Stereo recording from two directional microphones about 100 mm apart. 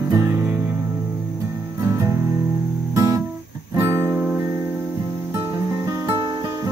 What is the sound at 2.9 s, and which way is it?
Guitar, 35° right (ahead or behind).